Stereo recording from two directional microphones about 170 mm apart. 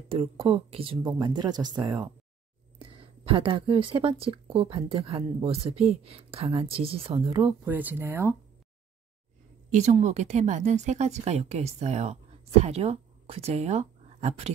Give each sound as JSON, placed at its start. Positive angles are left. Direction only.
{"t": 0.1, "sound": "a woman's voice", "side_deg": -35}
{"t": 7.6, "sound": "speech", "side_deg": -10}
{"t": 9.7, "sound": "speech", "side_deg": -40}